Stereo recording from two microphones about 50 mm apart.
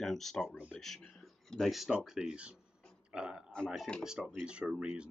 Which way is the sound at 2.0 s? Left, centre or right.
Centre.